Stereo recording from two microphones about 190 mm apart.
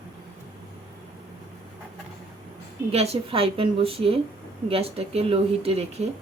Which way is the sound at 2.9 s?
30° right (ahead or behind).